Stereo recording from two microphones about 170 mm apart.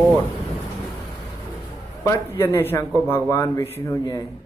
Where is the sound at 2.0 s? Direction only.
15° left (ahead or behind).